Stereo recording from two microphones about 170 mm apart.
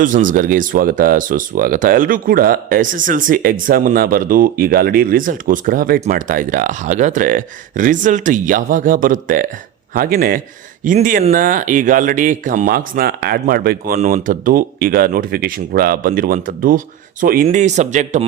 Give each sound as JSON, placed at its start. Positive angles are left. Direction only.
{"t": 0.0, "sound": "speech", "side_deg": -50}